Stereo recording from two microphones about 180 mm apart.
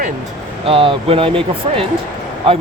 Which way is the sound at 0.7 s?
30° right (ahead or behind).